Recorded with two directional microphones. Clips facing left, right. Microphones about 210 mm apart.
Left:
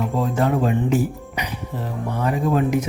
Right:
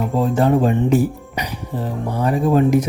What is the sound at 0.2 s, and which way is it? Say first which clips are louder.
Speech: right 5 dB; 30° right (ahead or behind).